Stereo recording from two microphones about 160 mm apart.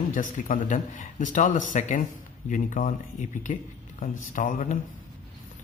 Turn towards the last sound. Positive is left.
turn(degrees=55)  # may be behind; listen again after turning